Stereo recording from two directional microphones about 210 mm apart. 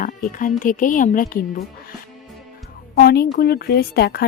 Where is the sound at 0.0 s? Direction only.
40° left (ahead or behind).